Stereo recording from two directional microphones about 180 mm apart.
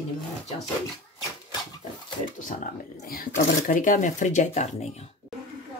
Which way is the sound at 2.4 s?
45° left (ahead or behind).